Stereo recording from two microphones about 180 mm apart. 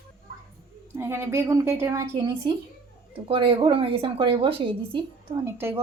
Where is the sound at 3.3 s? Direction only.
30° right (ahead or behind).